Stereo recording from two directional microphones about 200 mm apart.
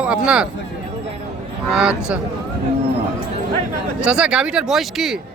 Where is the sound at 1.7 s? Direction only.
5° right (ahead or behind).